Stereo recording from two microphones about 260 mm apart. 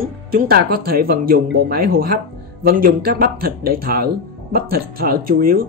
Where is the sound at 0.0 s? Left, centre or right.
Right.